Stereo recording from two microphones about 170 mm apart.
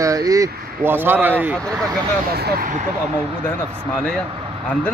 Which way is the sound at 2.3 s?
65° right (ahead or behind).